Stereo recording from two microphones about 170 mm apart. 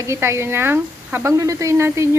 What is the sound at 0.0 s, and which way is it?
Speech, 15° right (ahead or behind).